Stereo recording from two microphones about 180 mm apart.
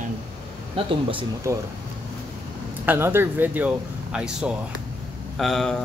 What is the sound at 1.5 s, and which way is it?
Speech, 15° right (ahead or behind).